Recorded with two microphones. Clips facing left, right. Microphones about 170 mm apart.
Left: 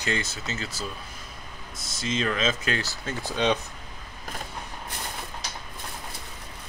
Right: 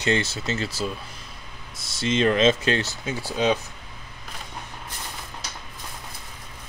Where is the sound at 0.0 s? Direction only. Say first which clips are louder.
Right 6 dB; 25° right (ahead or behind).